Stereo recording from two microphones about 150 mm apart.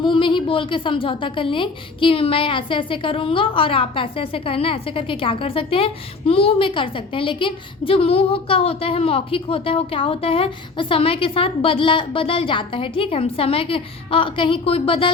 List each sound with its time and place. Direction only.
0.0 s a woman's voice: 35° left (ahead or behind)